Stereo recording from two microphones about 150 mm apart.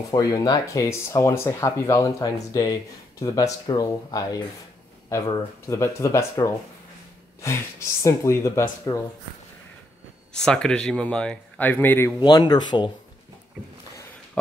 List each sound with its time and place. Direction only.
0.1 s speech: 25° left (ahead or behind)
7.4 s speech: 20° left (ahead or behind)
10.3 s speech: 5° left (ahead or behind)
12.2 s speech: 25° left (ahead or behind)